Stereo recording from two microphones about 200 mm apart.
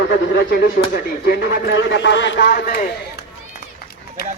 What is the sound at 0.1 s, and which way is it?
Speech, 55° left (ahead or behind).